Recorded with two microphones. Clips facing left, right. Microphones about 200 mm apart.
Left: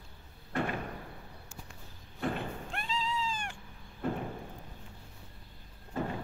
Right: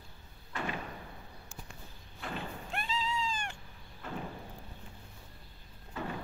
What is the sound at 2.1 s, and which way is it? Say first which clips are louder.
Thump: left 7 dB; 50° left (ahead or behind).